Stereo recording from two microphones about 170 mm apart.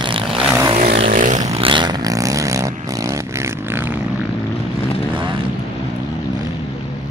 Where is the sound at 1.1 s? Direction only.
50° right (ahead or behind).